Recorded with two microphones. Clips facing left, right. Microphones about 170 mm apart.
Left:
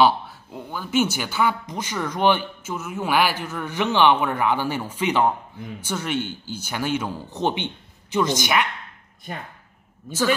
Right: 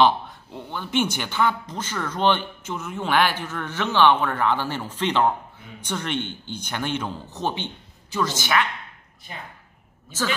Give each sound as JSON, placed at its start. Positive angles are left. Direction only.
{"t": 0.0, "sound": "speech", "side_deg": 10}
{"t": 7.3, "sound": "a woman's voice", "side_deg": 20}
{"t": 9.3, "sound": "speech", "side_deg": 55}